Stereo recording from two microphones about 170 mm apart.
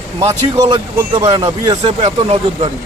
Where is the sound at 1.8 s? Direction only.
35° right (ahead or behind).